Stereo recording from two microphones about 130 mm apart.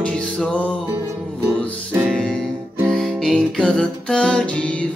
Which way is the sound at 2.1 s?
Centre (ahead or behind).